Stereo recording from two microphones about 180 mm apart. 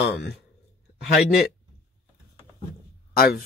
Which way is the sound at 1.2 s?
Centre (ahead or behind).